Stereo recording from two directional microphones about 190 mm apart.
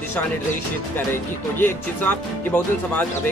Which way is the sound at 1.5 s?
10° left (ahead or behind).